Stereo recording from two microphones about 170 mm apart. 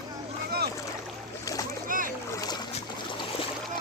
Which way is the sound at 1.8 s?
55° right (ahead or behind).